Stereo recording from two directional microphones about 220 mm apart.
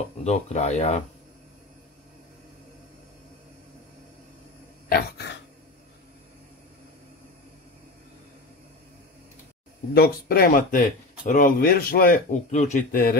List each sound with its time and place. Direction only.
0.2 s speech: 30° left (ahead or behind)
4.8 s a sound: 45° left (ahead or behind)
9.9 s speech: 45° left (ahead or behind)